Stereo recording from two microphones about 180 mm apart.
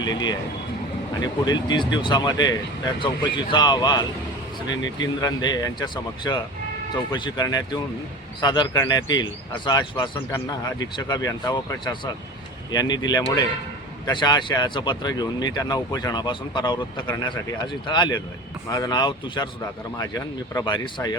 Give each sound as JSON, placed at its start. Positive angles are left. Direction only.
{"t": 0.0, "sound": "speech", "side_deg": 25}
{"t": 17.8, "sound": "speech", "side_deg": 25}